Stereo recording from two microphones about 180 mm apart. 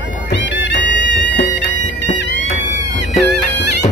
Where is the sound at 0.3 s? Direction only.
80° left.